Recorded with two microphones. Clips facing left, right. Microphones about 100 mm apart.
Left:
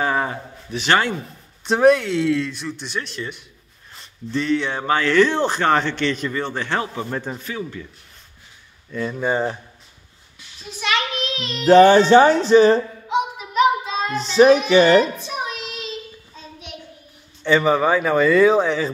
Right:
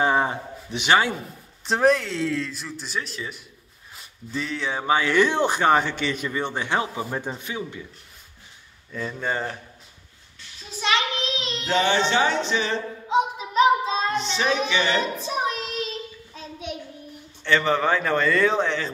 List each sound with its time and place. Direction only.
0.0 s a sound: 20° right (ahead or behind)
0.8 s speech: 5° right (ahead or behind)
9.2 s speech: 15° left (ahead or behind)
10.8 s child singing: 25° right (ahead or behind)
11.6 s music: 45° left (ahead or behind)
13.1 s child singing: 30° right (ahead or behind)
14.2 s speech: 40° left (ahead or behind)
15.1 s child singing: 35° right (ahead or behind)
17.4 s speech: 10° left (ahead or behind)